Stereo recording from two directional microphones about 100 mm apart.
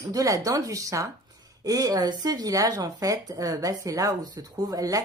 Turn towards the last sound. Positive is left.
turn(degrees=-35)  # may be behind; listen again after turning